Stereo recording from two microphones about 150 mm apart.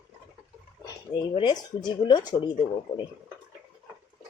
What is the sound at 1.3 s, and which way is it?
Speech, 30° left (ahead or behind).